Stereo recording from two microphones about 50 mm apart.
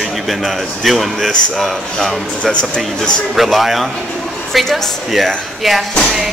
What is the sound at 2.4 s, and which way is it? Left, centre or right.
Speech, left.